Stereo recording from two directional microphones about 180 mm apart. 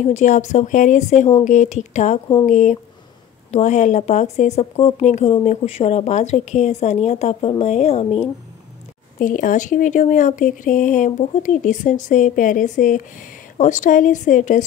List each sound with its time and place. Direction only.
0.0 s a woman's voice: 40° left (ahead or behind)
9.2 s speech: 45° left (ahead or behind)